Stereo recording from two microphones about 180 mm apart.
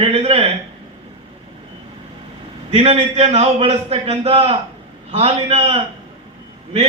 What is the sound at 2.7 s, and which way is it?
A man's voice, 30° right (ahead or behind).